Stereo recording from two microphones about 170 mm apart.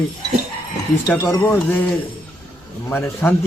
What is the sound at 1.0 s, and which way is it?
A man's voice, 15° left (ahead or behind).